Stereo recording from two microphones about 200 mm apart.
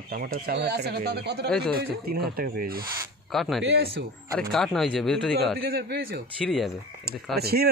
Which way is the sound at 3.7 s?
50° right (ahead or behind).